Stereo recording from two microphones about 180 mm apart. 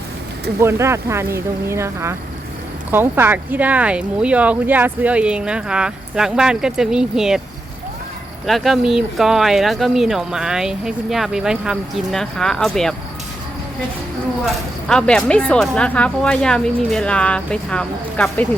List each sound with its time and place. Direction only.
0.6 s speech: 15° right (ahead or behind)
8.4 s speech: centre (ahead or behind)
14.8 s speech: 5° left (ahead or behind)